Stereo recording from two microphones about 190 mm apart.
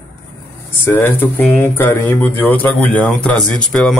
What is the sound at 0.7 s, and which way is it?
Speech, 10° left (ahead or behind).